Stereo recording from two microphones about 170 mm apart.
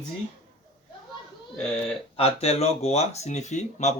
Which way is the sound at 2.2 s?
35° left (ahead or behind).